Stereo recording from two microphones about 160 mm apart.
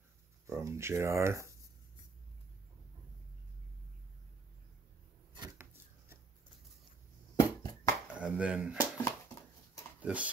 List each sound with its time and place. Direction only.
0.5 s speech: 15° right (ahead or behind)
7.6 s hands: 20° left (ahead or behind)
8.2 s speech: 5° right (ahead or behind)
8.7 s a sound: 20° left (ahead or behind)
9.9 s speech: 10° right (ahead or behind)